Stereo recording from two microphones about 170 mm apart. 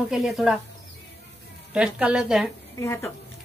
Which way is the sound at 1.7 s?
5° right (ahead or behind).